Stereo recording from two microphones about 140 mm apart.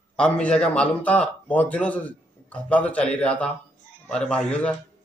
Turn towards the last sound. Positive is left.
turn(degrees=10)  # may be behind; listen again after turning